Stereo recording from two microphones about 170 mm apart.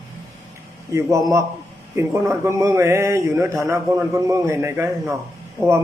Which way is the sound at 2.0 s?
15° right (ahead or behind).